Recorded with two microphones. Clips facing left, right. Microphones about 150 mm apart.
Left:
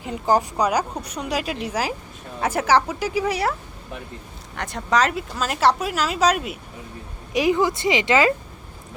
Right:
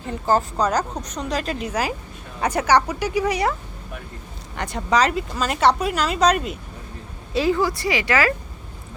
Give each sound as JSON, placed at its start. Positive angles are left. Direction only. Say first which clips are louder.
{"t": 0.0, "sound": "a woman's voice", "louder": "even", "side_deg": 15}
{"t": 4.5, "sound": "speech", "louder": "right 1 dB", "side_deg": 0}
{"t": 7.3, "sound": "speech", "louder": "left 1 dB", "side_deg": 15}